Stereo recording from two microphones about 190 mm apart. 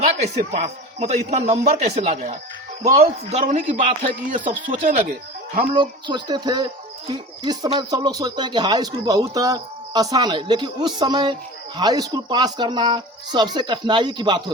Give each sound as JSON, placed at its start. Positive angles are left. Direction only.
{"t": 0.3, "sound": "a man's voice", "side_deg": -35}
{"t": 5.7, "sound": "speech", "side_deg": -25}